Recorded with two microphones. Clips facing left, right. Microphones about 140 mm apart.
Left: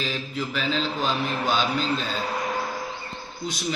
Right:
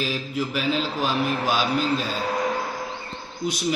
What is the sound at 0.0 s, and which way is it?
Speech, 10° right (ahead or behind).